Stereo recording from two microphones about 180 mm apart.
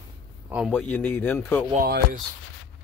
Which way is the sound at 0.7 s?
10° left (ahead or behind).